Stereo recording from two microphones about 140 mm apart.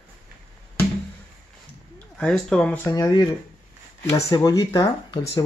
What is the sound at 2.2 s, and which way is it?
Speech, 5° left (ahead or behind).